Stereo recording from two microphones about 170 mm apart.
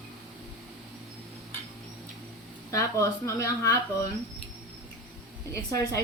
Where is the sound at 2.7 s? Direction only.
20° left (ahead or behind).